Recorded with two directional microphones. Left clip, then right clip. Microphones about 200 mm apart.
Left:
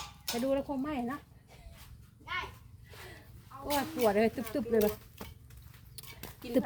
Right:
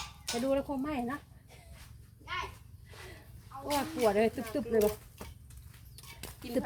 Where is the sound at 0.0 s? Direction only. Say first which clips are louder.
Even; 50° left (ahead or behind).